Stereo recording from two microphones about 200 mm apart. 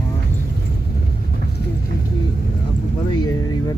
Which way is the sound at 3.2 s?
20° left (ahead or behind).